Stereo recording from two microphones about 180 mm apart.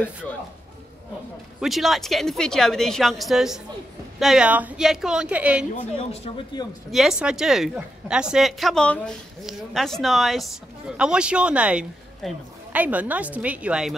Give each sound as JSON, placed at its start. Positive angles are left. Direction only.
{"t": 1.6, "sound": "a woman's voice", "side_deg": 0}
{"t": 5.8, "sound": "speech", "side_deg": 30}
{"t": 6.9, "sound": "a woman's voice", "side_deg": 0}